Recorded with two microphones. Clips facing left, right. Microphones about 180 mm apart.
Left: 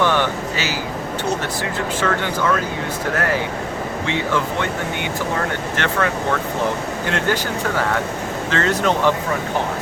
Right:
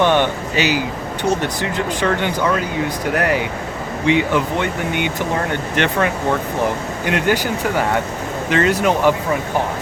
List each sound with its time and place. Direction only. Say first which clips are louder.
0.0 s a sound: right 3 dB; 20° right (ahead or behind)
1.4 s speech: right 2 dB; 20° right (ahead or behind)
8.4 s speech: right 3 dB; 15° right (ahead or behind)